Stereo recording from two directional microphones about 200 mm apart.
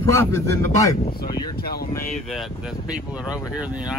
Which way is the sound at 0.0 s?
15° left (ahead or behind).